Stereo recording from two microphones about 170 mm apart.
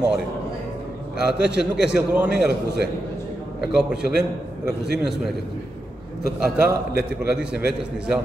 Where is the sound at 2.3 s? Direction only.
75° right (ahead or behind).